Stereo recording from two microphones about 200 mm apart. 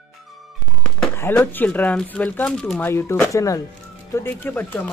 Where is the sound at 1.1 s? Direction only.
10° left (ahead or behind).